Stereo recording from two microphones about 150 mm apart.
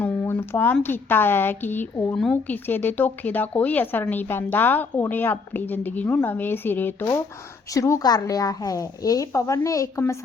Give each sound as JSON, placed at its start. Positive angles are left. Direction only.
{"t": 0.0, "sound": "a woman's voice", "side_deg": 15}